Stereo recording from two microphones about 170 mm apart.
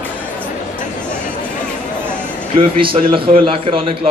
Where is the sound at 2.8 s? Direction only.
30° right (ahead or behind).